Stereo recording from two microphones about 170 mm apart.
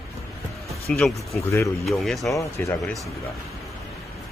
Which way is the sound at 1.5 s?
15° left (ahead or behind).